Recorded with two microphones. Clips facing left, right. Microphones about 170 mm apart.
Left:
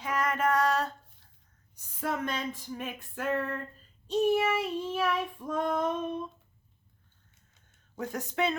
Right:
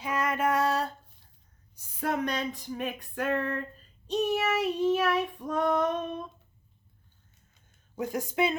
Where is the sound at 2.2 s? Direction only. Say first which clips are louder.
Right 3 dB; 15° right (ahead or behind).